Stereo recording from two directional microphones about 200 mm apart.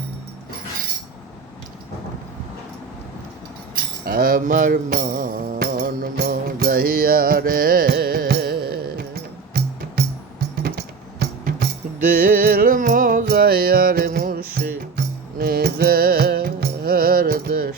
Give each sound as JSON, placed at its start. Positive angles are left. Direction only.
{"t": 4.0, "sound": "mantra", "side_deg": -50}
{"t": 9.5, "sound": "music", "side_deg": -50}